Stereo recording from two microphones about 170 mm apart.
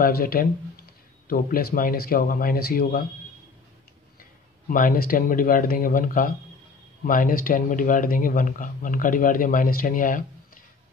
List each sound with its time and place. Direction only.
0.0 s speech: 60° left (ahead or behind)
4.2 s speech: 55° left (ahead or behind)